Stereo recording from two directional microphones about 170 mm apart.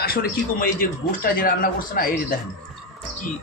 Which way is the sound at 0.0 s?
60° left (ahead or behind).